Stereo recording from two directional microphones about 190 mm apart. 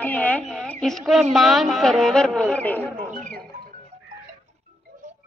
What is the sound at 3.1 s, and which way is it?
Speech, 40° right (ahead or behind).